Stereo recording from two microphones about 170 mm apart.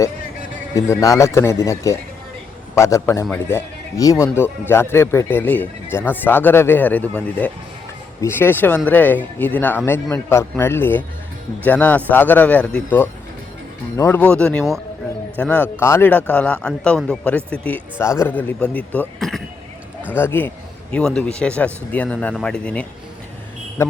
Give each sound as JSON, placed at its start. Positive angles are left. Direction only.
{"t": 0.9, "sound": "speech", "side_deg": 20}